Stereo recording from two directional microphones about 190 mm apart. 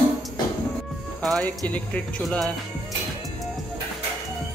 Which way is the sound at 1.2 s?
Centre (ahead or behind).